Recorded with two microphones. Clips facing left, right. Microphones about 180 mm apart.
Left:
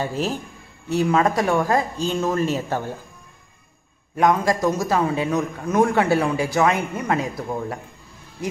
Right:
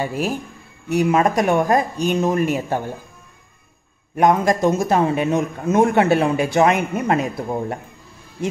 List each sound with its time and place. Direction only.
0.0 s speech: 10° right (ahead or behind)
4.2 s a man's voice: 20° right (ahead or behind)